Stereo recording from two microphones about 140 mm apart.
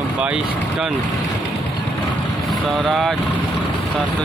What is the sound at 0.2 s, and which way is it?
Speech, 5° right (ahead or behind).